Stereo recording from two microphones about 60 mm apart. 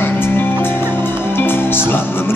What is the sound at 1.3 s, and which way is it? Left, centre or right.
Music, left.